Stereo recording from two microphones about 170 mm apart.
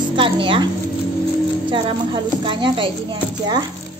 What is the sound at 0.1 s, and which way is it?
Speech, 30° right (ahead or behind).